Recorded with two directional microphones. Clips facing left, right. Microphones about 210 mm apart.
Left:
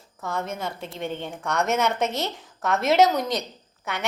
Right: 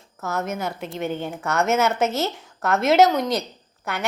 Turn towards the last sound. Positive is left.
turn(degrees=0)  # may be behind; listen again after turning